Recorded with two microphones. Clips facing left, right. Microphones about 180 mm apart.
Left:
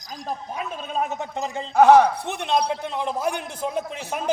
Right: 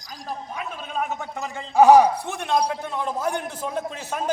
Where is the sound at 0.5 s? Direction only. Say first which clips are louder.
Left 2 dB; 25° left (ahead or behind).